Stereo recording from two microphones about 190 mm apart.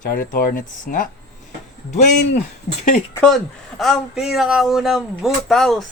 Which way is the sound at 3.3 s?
Centre (ahead or behind).